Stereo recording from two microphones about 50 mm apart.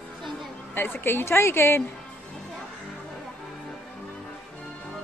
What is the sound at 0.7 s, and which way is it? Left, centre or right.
Speech, left.